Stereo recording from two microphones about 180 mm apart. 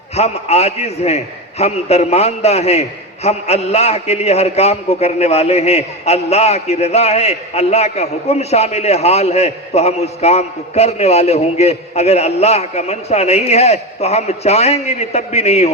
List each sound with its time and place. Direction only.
0.2 s a man's voice: 35° left (ahead or behind)